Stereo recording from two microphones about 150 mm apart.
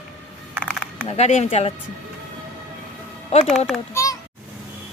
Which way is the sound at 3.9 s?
20° left (ahead or behind).